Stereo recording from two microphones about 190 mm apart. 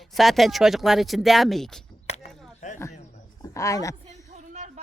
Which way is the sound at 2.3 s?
Centre (ahead or behind).